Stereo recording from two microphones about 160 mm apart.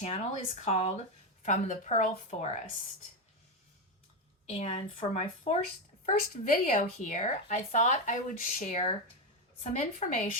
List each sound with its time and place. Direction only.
0.0 s speech: 40° left (ahead or behind)
4.4 s speech: 40° left (ahead or behind)
6.1 s speech: 60° left (ahead or behind); by 9.0 s 40° left (ahead or behind)
10.0 s speech: 45° left (ahead or behind)